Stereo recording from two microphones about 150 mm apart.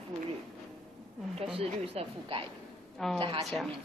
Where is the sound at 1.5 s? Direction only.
40° right (ahead or behind).